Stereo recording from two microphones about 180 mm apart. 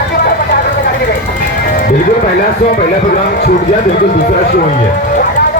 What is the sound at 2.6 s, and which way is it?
A woman's voice, 55° left (ahead or behind).